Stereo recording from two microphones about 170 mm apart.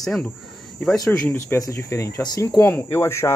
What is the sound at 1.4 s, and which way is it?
Speech, 15° left (ahead or behind).